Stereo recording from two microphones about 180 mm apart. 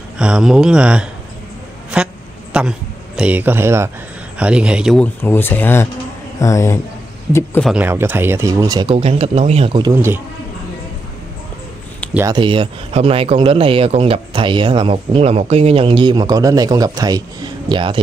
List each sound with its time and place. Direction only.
0.2 s a man's voice: 5° right (ahead or behind); by 6.8 s 15° left (ahead or behind)
7.6 s speech: 10° right (ahead or behind)
12.3 s speech: 25° right (ahead or behind)